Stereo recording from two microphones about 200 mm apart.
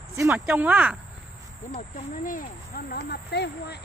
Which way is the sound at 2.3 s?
45° left (ahead or behind).